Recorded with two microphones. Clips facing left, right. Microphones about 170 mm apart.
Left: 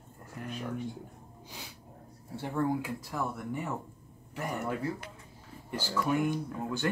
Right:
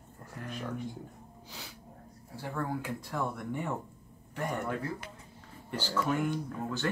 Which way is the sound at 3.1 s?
5° left (ahead or behind).